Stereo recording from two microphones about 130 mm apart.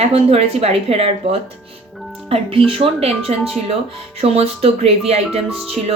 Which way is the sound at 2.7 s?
45° right (ahead or behind).